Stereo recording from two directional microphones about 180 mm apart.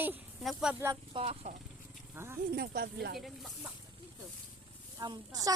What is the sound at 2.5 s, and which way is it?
Speech, 60° right (ahead or behind).